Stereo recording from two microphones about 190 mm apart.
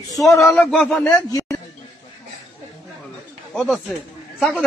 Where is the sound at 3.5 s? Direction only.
5° left (ahead or behind).